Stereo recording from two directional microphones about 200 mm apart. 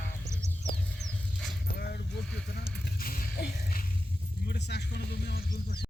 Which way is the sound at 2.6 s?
45° left (ahead or behind).